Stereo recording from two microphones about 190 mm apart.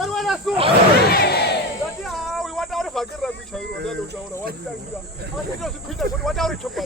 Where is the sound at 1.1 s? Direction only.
55° left (ahead or behind).